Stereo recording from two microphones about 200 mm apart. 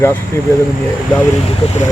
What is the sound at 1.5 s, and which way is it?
Speech, 30° left (ahead or behind).